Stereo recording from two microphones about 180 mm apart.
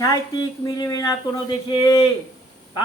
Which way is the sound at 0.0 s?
20° left (ahead or behind).